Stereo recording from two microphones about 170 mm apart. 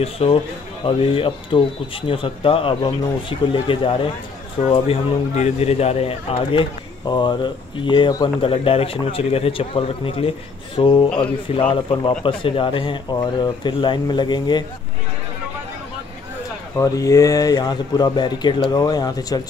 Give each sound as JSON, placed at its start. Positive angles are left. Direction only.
{"t": 0.0, "sound": "speech", "side_deg": 35}
{"t": 16.7, "sound": "speech", "side_deg": 20}